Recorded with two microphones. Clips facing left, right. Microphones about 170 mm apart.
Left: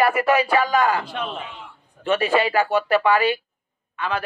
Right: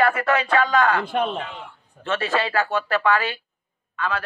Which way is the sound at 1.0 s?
50° right (ahead or behind).